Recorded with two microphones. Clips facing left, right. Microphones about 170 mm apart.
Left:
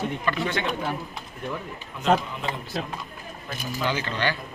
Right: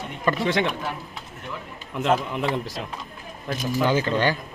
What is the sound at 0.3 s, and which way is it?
Speech, 40° right (ahead or behind).